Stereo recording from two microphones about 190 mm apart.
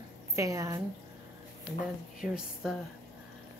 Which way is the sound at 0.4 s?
15° right (ahead or behind).